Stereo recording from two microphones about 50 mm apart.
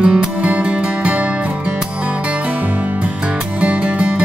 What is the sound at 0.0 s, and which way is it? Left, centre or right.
Music, centre.